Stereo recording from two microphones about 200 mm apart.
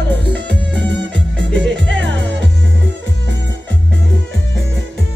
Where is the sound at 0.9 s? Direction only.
60° right (ahead or behind).